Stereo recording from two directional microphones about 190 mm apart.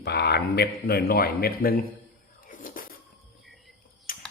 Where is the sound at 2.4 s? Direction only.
45° left (ahead or behind).